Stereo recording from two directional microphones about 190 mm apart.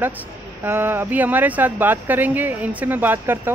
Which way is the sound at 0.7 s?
10° right (ahead or behind).